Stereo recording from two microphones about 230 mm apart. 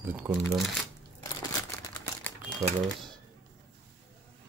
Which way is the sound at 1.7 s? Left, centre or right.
Centre.